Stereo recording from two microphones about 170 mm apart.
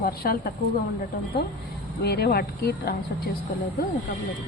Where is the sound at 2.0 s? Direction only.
70° left (ahead or behind).